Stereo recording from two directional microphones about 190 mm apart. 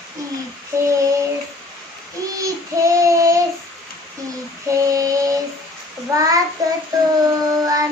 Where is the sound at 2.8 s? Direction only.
15° right (ahead or behind).